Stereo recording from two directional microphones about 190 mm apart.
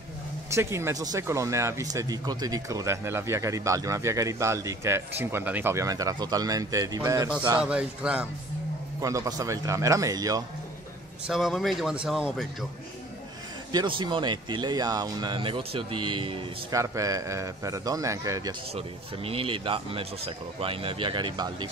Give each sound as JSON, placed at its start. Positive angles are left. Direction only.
{"t": 0.5, "sound": "speech", "side_deg": -15}
{"t": 7.6, "sound": "speech", "side_deg": -5}
{"t": 9.0, "sound": "speech", "side_deg": -15}
{"t": 11.2, "sound": "speech", "side_deg": 0}
{"t": 13.7, "sound": "a man's voice", "side_deg": -25}
{"t": 16.7, "sound": "speech", "side_deg": -15}
{"t": 18.8, "sound": "a man's voice", "side_deg": -30}